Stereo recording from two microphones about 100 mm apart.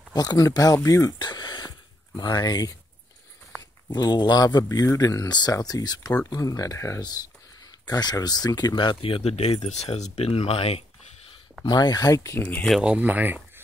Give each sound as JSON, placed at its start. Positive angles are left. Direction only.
{"t": 0.1, "sound": "speech", "side_deg": 40}
{"t": 0.8, "sound": "a sound", "side_deg": 35}
{"t": 2.1, "sound": "speech", "side_deg": 45}
{"t": 3.9, "sound": "speech", "side_deg": 45}
{"t": 7.0, "sound": "speech", "side_deg": 45}
{"t": 11.6, "sound": "speech", "side_deg": 45}
{"t": 12.8, "sound": "speech", "side_deg": -15}